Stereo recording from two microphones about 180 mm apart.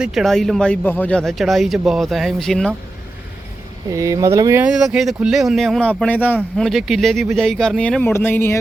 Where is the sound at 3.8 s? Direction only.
20° right (ahead or behind).